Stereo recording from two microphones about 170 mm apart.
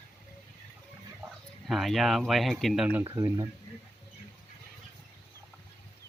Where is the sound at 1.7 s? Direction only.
Centre (ahead or behind); by 3.4 s 20° right (ahead or behind).